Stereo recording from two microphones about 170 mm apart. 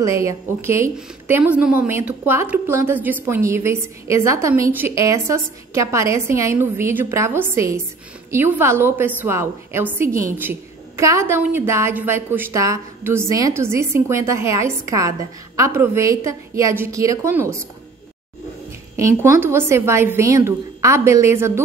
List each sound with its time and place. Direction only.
0.0 s a woman's voice: 15° right (ahead or behind)
18.9 s a woman's voice: 15° right (ahead or behind)